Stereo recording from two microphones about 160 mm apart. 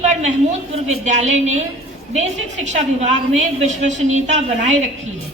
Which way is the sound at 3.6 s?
50° right (ahead or behind).